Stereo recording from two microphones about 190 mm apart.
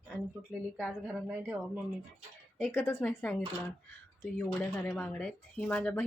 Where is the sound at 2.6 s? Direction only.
10° left (ahead or behind).